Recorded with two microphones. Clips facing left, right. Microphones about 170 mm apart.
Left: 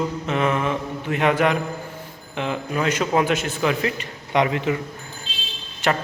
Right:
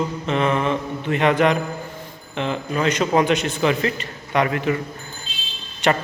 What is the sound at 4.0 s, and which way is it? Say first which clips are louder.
Speech: even; 20° left (ahead or behind).